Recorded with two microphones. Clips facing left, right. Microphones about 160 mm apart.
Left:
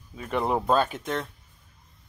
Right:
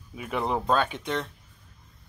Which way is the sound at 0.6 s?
5° left (ahead or behind).